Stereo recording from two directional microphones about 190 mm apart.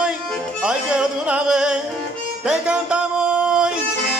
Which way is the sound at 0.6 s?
5° right (ahead or behind).